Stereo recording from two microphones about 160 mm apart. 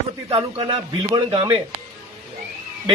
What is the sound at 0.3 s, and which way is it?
A man's voice, 30° right (ahead or behind).